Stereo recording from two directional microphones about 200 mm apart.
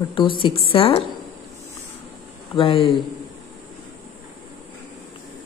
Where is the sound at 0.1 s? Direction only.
25° left (ahead or behind).